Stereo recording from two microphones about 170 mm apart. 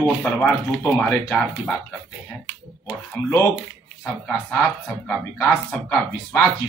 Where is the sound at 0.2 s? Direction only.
5° left (ahead or behind).